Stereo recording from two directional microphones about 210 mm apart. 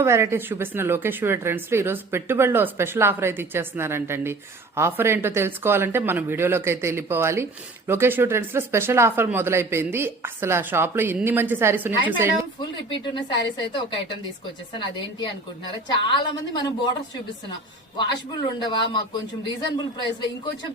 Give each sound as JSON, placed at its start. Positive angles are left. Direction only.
{"t": 0.0, "sound": "speech", "side_deg": -10}
{"t": 12.5, "sound": "speech", "side_deg": 20}
{"t": 18.4, "sound": "speech", "side_deg": 20}